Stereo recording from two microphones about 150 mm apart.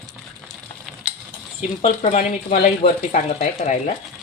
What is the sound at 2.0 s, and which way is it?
Speech, 55° left (ahead or behind).